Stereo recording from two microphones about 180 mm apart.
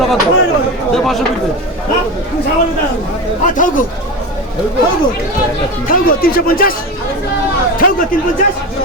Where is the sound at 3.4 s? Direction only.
45° left (ahead or behind).